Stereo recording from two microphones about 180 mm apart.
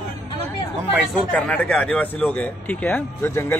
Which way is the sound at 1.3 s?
10° left (ahead or behind).